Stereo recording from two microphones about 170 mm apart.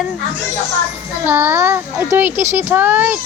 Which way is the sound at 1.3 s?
15° right (ahead or behind).